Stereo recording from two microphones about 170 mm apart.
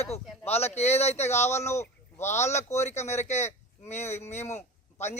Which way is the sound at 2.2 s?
40° left (ahead or behind).